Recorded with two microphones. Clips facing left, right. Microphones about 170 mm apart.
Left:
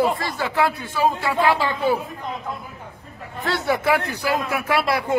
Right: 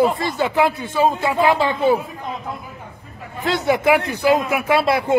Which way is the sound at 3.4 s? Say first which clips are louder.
Right 4 dB; 20° right (ahead or behind).